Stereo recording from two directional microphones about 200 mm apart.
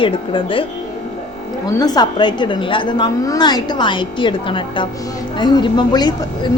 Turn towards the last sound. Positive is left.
turn(degrees=20)  # may be behind; listen again after turning